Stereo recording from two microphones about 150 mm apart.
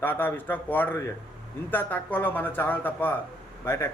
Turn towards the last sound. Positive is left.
turn(degrees=15)  # may be behind; listen again after turning